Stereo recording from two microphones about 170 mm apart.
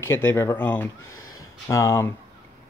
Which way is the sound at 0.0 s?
15° left (ahead or behind).